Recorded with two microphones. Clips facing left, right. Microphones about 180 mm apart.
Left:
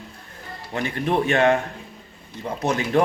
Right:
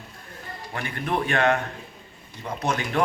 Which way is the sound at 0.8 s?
25° left (ahead or behind).